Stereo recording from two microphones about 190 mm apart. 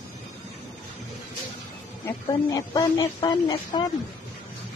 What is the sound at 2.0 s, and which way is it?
Speech, 20° left (ahead or behind).